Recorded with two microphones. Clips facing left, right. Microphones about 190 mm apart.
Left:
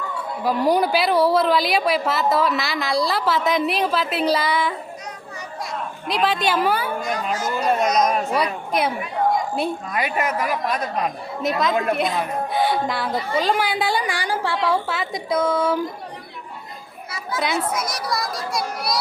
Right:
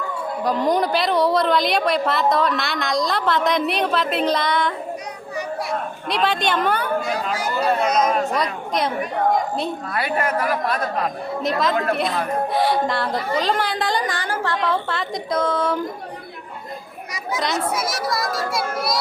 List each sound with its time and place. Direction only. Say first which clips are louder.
0.4 s a woman's voice: left 1 dB; 10° left (ahead or behind)
6.1 s a woman's voice: even; centre (ahead or behind)
7.6 s a sound: even; 30° right (ahead or behind)
8.2 s a woman's voice: even; 15° left (ahead or behind)
9.6 s a woman's voice: left 1 dB; 10° left (ahead or behind)
11.6 s a woman's voice: left 1 dB; centre (ahead or behind)
17.7 s a woman's voice: right 2 dB; 5° right (ahead or behind)